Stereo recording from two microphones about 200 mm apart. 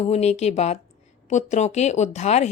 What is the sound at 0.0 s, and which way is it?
Speech, 35° left (ahead or behind).